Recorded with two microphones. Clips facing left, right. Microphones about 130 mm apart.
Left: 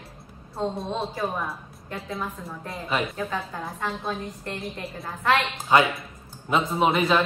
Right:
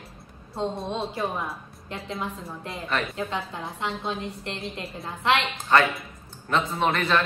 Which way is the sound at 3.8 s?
25° right (ahead or behind).